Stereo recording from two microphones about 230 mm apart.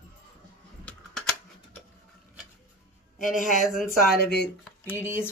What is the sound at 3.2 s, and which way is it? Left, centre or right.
Speech, left.